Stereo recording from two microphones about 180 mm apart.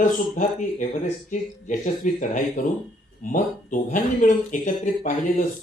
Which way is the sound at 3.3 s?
45° left (ahead or behind).